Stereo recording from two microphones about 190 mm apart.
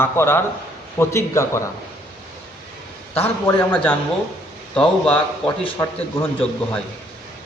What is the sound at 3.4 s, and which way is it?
A man's voice, 10° left (ahead or behind).